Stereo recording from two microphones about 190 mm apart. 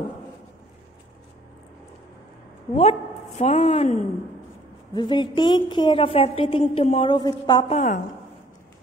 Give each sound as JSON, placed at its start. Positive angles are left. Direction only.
{"t": 2.8, "sound": "a woman's voice", "side_deg": 35}
{"t": 4.9, "sound": "a woman's voice", "side_deg": 20}
{"t": 7.7, "sound": "a woman's voice", "side_deg": 45}